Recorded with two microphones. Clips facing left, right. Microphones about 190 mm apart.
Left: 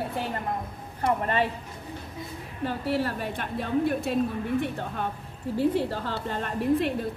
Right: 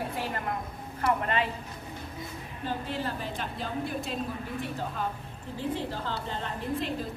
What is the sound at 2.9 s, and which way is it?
A woman's voice, 65° left (ahead or behind).